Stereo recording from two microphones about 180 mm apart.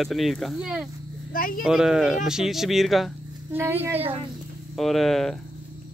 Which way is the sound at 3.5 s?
10° right (ahead or behind).